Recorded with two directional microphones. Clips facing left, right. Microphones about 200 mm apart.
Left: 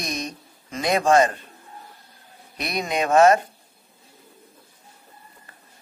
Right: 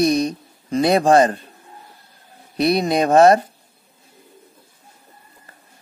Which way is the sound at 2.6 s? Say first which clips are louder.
Right 8 dB; 35° right (ahead or behind).